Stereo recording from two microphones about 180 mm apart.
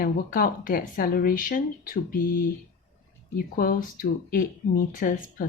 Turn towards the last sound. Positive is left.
turn(degrees=50)  # may be behind; listen again after turning